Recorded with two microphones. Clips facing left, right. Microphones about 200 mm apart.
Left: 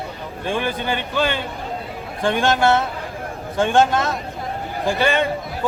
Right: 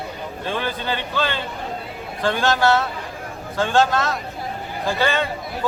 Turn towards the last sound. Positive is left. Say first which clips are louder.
# left 2 dB
turn(degrees=15)  # may be behind; listen again after turning